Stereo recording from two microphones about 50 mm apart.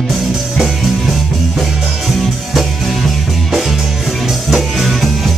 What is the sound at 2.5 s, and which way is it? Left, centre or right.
Music, centre.